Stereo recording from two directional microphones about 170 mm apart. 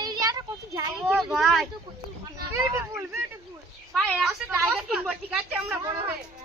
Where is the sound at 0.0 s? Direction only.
25° right (ahead or behind).